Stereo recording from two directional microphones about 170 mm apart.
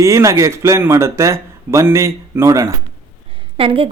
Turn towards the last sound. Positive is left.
turn(degrees=-30)  # may be behind; listen again after turning